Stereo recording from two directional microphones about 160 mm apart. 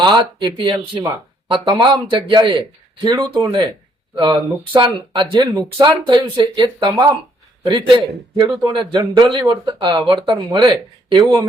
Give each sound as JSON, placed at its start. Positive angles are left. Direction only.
{"t": 0.0, "sound": "a man's voice", "side_deg": -30}